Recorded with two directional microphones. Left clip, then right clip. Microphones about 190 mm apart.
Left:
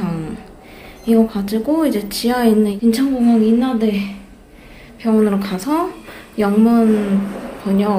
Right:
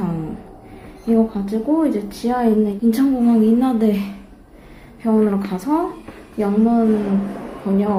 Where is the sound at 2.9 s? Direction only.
20° right (ahead or behind).